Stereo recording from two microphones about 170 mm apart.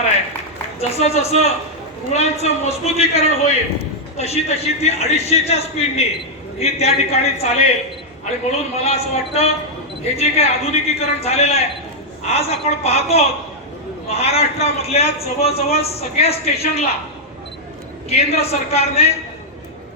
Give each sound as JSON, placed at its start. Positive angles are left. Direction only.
{"t": 0.8, "sound": "a man's voice", "side_deg": 40}
{"t": 18.1, "sound": "a man's voice", "side_deg": 40}